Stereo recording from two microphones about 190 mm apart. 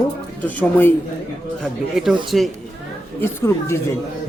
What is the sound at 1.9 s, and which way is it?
Speech, 5° right (ahead or behind).